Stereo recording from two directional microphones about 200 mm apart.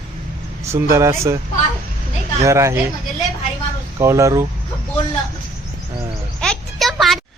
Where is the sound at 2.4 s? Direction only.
15° right (ahead or behind).